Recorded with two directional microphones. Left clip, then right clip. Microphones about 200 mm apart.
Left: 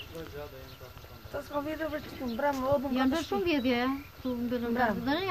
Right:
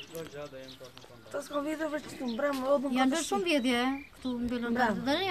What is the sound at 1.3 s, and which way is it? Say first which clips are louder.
Speech: right 1 dB; 45° right (ahead or behind).